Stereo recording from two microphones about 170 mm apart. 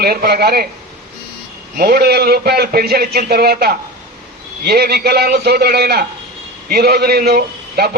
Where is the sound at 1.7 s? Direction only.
60° right (ahead or behind).